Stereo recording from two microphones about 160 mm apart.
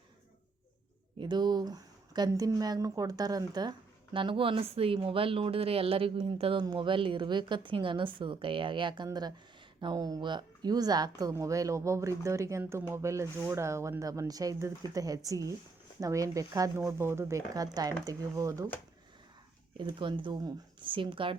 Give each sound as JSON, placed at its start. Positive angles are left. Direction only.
{"t": 1.2, "sound": "a woman's voice", "side_deg": -25}
{"t": 19.7, "sound": "a woman's voice", "side_deg": -30}